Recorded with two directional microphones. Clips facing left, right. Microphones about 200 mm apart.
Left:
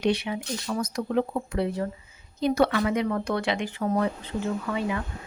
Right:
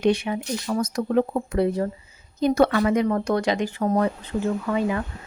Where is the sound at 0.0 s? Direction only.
50° right (ahead or behind).